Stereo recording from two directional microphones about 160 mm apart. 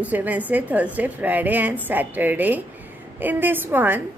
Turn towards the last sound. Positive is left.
turn(degrees=-15)  # may be behind; listen again after turning